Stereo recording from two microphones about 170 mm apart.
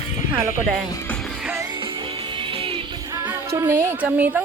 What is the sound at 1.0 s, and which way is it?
Music, 5° left (ahead or behind).